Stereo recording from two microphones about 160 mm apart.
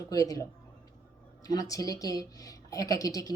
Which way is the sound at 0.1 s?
20° left (ahead or behind).